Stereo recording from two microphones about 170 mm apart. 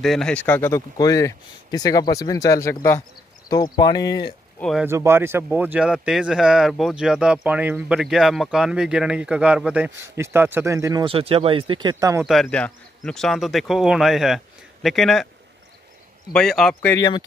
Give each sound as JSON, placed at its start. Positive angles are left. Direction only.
{"t": 0.0, "sound": "speech", "side_deg": 0}
{"t": 4.6, "sound": "speech", "side_deg": 0}
{"t": 4.8, "sound": "speech", "side_deg": -15}
{"t": 12.3, "sound": "speech", "side_deg": 5}
{"t": 16.3, "sound": "speech", "side_deg": 5}
{"t": 16.9, "sound": "speech", "side_deg": 25}